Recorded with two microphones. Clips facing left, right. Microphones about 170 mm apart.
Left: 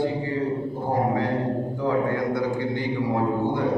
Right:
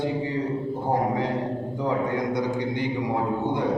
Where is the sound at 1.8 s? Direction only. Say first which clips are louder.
Left 1 dB; 20° right (ahead or behind).